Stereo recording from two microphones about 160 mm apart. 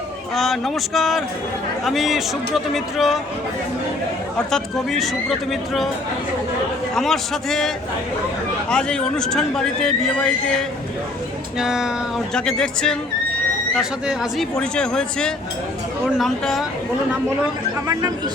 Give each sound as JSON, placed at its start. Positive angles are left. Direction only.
{"t": 0.3, "sound": "a man's voice", "side_deg": 0}
{"t": 4.4, "sound": "a man's voice", "side_deg": 0}
{"t": 6.9, "sound": "a man's voice", "side_deg": 0}
{"t": 8.7, "sound": "a man's voice", "side_deg": 5}
{"t": 11.6, "sound": "a man's voice", "side_deg": -5}